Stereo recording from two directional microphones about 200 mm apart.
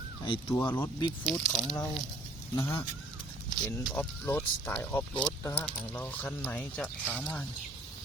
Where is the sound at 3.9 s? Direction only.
10° left (ahead or behind).